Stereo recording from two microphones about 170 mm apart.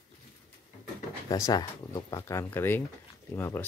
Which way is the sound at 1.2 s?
20° left (ahead or behind).